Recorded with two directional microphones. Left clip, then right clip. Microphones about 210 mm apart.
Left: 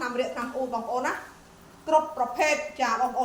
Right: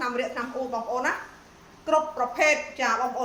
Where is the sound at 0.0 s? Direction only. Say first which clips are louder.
Right 1 dB; 15° right (ahead or behind).